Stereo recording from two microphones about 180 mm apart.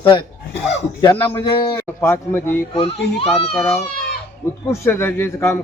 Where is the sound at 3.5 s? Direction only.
10° left (ahead or behind).